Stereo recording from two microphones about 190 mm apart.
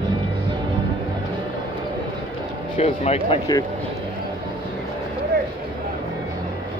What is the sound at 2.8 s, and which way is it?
Speech, 30° left (ahead or behind).